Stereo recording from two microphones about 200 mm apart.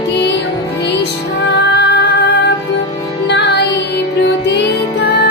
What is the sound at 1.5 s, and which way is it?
Music, 60° left (ahead or behind).